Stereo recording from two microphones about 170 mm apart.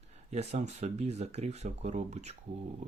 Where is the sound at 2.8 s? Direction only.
40° right (ahead or behind).